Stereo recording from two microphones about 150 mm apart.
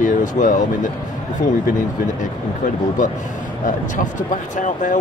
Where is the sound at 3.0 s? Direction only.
55° left (ahead or behind).